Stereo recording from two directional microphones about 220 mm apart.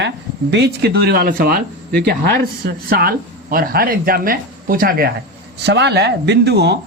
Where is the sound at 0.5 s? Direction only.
50° right (ahead or behind).